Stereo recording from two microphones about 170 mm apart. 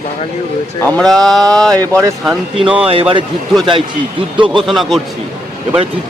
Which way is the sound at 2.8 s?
35° right (ahead or behind).